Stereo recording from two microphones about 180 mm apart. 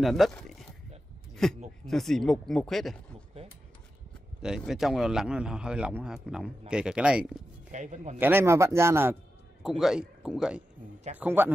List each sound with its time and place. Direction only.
0.0 s speech: centre (ahead or behind)
1.3 s a sound: centre (ahead or behind)
1.9 s a man's voice: centre (ahead or behind)
4.4 s a man's voice: 5° right (ahead or behind)
7.7 s speech: 45° right (ahead or behind)
8.2 s speech: 10° right (ahead or behind)
9.6 s a man's voice: centre (ahead or behind)